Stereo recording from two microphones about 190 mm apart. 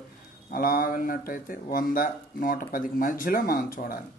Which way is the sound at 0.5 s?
50° left (ahead or behind).